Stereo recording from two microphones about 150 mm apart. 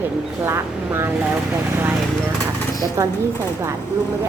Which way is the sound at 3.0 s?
20° right (ahead or behind).